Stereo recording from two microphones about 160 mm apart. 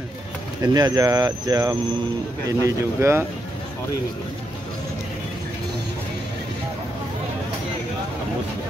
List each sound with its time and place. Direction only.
0.6 s speech: 20° right (ahead or behind)